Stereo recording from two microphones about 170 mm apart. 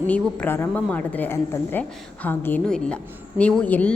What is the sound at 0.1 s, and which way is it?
A woman's voice, 10° left (ahead or behind).